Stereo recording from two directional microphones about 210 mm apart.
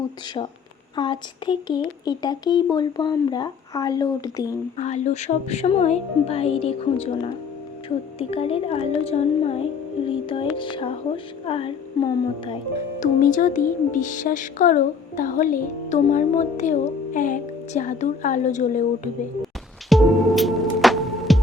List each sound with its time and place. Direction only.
0.9 s speech: 20° left (ahead or behind)
4.8 s speech: 35° left (ahead or behind)
13.3 s speech: 40° left (ahead or behind)
19.9 s music: centre (ahead or behind)